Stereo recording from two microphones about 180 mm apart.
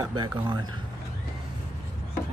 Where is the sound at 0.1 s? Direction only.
25° right (ahead or behind).